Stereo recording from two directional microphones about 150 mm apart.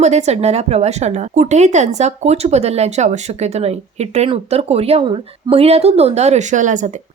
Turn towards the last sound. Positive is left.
turn(degrees=-55)  # may be behind; listen again after turning